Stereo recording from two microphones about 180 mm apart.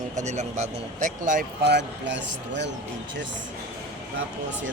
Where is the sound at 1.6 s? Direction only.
70° right (ahead or behind).